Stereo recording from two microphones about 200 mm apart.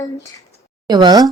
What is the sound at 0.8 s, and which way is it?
Speech, 20° right (ahead or behind).